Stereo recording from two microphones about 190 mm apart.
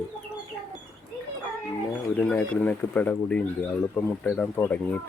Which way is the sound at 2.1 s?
10° left (ahead or behind).